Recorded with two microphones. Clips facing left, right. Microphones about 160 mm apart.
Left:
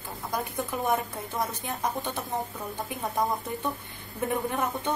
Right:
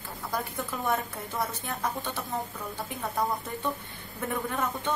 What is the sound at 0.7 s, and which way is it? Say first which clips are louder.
A woman's voice: left 2 dB; 15° left (ahead or behind).